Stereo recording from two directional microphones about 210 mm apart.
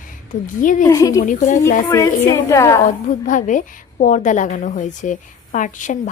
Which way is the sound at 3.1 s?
35° left (ahead or behind).